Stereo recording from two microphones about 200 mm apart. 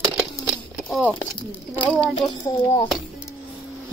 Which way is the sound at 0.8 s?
5° left (ahead or behind).